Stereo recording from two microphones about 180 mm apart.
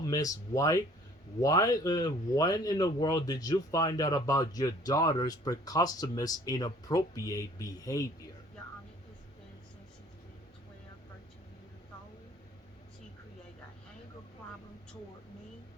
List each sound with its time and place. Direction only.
0.1 s speech: 20° left (ahead or behind)